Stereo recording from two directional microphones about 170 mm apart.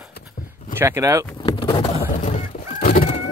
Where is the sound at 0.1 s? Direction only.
60° left (ahead or behind).